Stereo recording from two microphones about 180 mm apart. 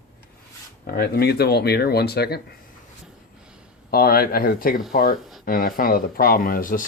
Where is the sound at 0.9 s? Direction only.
60° left (ahead or behind).